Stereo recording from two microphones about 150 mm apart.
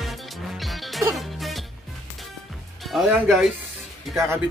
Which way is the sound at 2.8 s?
Centre (ahead or behind).